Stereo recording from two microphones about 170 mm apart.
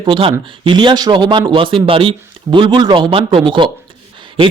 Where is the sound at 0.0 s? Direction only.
30° right (ahead or behind).